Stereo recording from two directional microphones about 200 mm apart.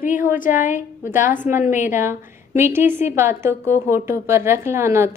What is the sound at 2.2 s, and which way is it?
A woman's voice, 10° right (ahead or behind).